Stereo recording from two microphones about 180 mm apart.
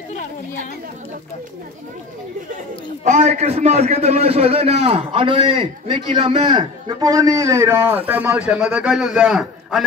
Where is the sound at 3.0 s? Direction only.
40° right (ahead or behind).